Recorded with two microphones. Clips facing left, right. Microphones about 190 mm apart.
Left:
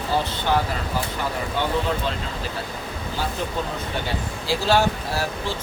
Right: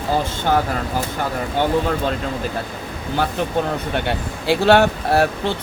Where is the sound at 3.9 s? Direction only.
60° right (ahead or behind).